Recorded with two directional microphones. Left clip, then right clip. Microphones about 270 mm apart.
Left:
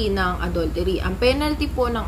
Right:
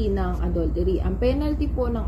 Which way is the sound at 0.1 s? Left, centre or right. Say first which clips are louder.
Left 5 dB; left.